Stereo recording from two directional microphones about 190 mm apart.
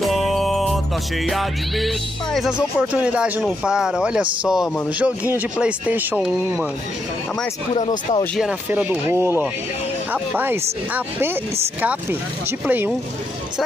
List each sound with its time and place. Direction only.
0.0 s music: centre (ahead or behind)
1.2 s speech: centre (ahead or behind)
7.7 s speech: 30° left (ahead or behind)
8.4 s speech: 5° right (ahead or behind)